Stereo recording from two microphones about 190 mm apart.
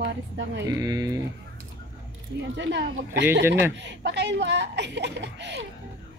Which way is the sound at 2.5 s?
70° right (ahead or behind).